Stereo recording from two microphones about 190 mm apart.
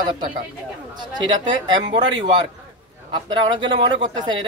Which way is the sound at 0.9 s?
25° right (ahead or behind).